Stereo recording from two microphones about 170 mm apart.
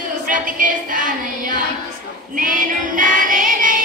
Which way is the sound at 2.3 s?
50° right (ahead or behind).